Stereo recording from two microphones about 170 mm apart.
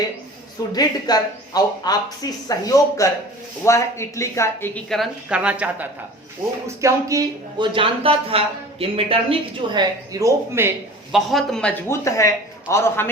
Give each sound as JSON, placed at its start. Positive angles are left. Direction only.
{"t": 0.7, "sound": "speech", "side_deg": 25}
{"t": 4.9, "sound": "a woman's voice", "side_deg": -5}
{"t": 7.7, "sound": "speech", "side_deg": -30}
{"t": 11.1, "sound": "speech", "side_deg": 0}
{"t": 11.9, "sound": "speech", "side_deg": 15}